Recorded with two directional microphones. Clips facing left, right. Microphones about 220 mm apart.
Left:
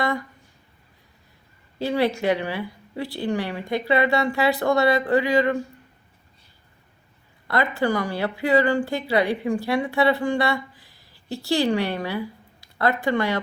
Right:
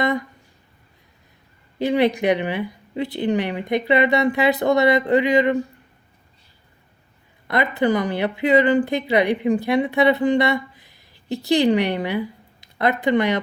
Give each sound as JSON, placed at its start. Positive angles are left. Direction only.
{"t": 0.0, "sound": "a sound", "side_deg": -20}
{"t": 1.8, "sound": "speech", "side_deg": -20}
{"t": 7.4, "sound": "speech", "side_deg": -20}